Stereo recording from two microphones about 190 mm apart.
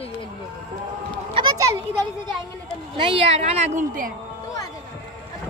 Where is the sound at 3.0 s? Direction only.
30° right (ahead or behind).